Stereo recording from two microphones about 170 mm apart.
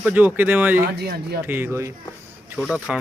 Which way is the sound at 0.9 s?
70° right (ahead or behind).